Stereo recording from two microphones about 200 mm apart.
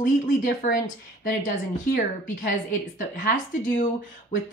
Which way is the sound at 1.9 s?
45° left (ahead or behind).